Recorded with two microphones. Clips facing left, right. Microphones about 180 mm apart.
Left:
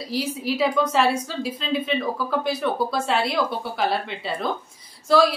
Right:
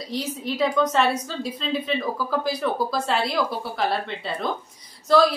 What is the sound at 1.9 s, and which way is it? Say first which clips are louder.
A woman's voice: left 1 dB; centre (ahead or behind).